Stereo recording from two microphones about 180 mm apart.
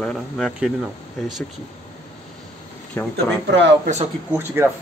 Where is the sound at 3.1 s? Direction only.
75° right (ahead or behind).